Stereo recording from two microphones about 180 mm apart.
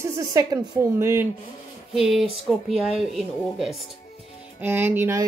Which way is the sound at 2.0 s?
Centre (ahead or behind).